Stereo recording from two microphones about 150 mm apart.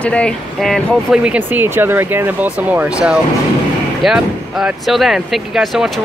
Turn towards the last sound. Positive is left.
turn(degrees=0)  # may be behind; listen again after turning